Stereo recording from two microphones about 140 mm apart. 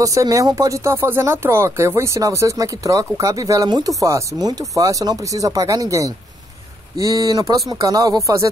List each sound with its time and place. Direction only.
0.0 s speech: 25° right (ahead or behind)